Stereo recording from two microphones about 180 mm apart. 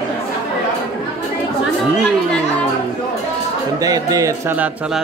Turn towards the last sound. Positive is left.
turn(degrees=-10)  # may be behind; listen again after turning